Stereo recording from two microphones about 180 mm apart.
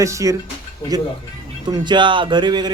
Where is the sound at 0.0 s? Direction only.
15° right (ahead or behind).